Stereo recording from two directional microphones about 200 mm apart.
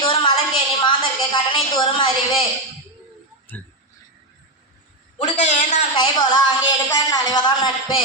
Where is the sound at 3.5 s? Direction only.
10° left (ahead or behind).